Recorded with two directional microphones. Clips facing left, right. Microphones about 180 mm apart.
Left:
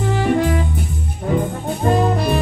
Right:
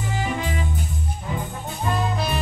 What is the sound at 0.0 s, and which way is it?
Music, 65° left (ahead or behind).